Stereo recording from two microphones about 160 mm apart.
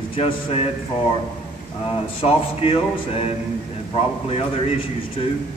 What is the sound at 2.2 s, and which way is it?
A man's voice, 35° left (ahead or behind).